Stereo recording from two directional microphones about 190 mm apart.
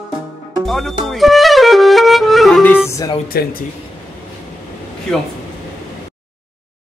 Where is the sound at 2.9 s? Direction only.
15° left (ahead or behind).